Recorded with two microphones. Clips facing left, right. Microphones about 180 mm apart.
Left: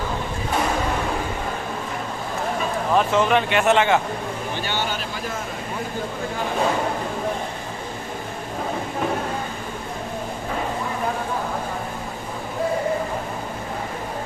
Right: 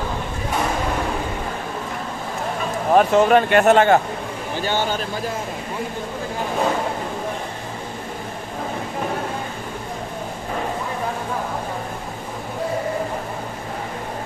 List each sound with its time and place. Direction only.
2.9 s speech: 45° right (ahead or behind)